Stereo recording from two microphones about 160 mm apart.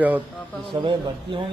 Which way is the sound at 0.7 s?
30° right (ahead or behind).